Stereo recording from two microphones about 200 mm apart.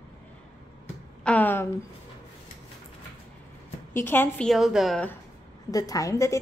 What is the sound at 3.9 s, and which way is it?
A woman's voice, 10° left (ahead or behind).